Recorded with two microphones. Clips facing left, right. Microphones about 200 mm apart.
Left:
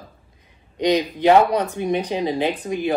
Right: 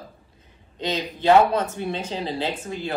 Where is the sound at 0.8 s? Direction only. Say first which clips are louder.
Left 8 dB; 15° left (ahead or behind).